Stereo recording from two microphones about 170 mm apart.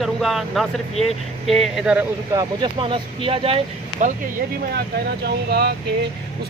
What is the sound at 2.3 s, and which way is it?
Speech, 20° right (ahead or behind).